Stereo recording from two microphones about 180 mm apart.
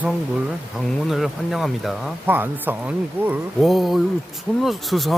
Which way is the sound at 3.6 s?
Centre (ahead or behind).